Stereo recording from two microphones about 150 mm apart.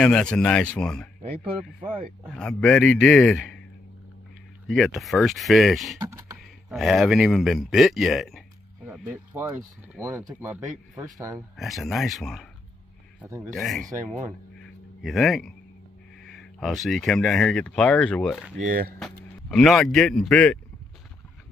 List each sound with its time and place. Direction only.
0.0 s speech: 5° left (ahead or behind)
2.3 s speech: 5° left (ahead or behind)
4.6 s speech: centre (ahead or behind)
5.9 s speech: 20° right (ahead or behind)
6.3 s speech: centre (ahead or behind)
9.3 s speech: 20° right (ahead or behind)
11.5 s speech: centre (ahead or behind)
13.2 s speech: 10° right (ahead or behind)
13.6 s speech: centre (ahead or behind)
13.8 s speech: 20° right (ahead or behind)
14.6 s a sound: centre (ahead or behind)
16.3 s speech: centre (ahead or behind)
18.6 s speech: 70° right (ahead or behind)
19.5 s speech: centre (ahead or behind)